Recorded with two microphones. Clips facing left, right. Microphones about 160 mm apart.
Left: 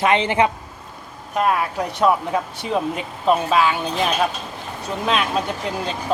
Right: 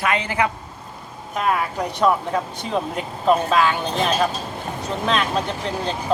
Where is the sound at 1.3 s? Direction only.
5° left (ahead or behind).